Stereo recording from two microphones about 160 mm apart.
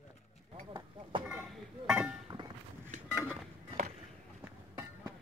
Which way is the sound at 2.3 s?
30° right (ahead or behind).